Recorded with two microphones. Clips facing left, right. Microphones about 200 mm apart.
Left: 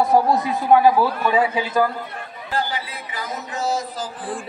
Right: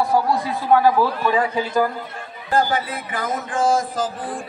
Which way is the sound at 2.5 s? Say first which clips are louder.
Right 6 dB; 50° right (ahead or behind).